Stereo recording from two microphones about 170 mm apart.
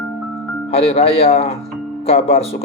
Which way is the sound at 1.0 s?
40° left (ahead or behind).